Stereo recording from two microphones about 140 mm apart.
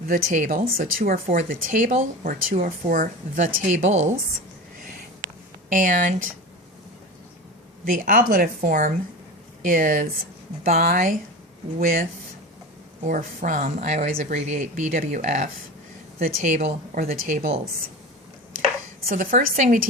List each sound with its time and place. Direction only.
0.1 s speech: 80° right; by 4.1 s 55° right (ahead or behind)
5.6 s speech: 70° right (ahead or behind)
7.9 s speech: 75° right (ahead or behind)
10.6 s a woman's voice: 90° right
13.1 s speech: 70° right (ahead or behind); by 17.6 s 55° right (ahead or behind)
19.0 s speech: 70° right (ahead or behind)